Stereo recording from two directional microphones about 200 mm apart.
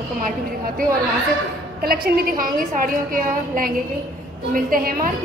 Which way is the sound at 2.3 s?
45° right (ahead or behind).